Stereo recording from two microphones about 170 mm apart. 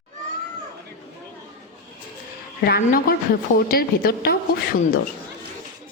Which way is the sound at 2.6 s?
65° left (ahead or behind).